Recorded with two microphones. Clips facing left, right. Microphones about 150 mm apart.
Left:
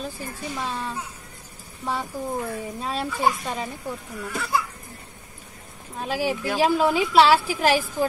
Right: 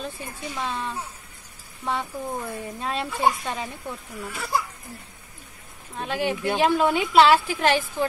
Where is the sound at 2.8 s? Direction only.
5° left (ahead or behind).